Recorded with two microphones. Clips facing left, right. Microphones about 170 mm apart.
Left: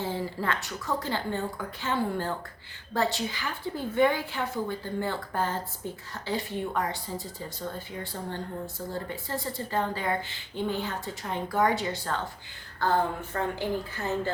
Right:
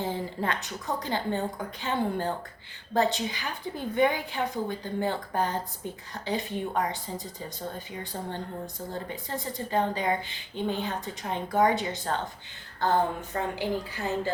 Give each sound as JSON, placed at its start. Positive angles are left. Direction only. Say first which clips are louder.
{"t": 0.0, "sound": "a woman's voice", "louder": "even", "side_deg": -15}
{"t": 8.1, "sound": "a woman's voice", "louder": "right 1 dB", "side_deg": -15}